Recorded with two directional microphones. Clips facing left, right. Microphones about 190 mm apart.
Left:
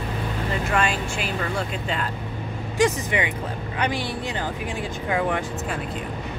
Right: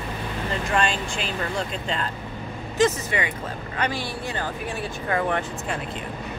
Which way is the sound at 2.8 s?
15° left (ahead or behind).